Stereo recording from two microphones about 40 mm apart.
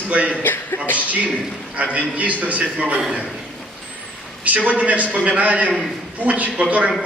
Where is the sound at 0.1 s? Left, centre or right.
Right.